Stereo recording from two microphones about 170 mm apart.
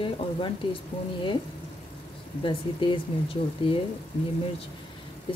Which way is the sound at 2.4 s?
30° left (ahead or behind).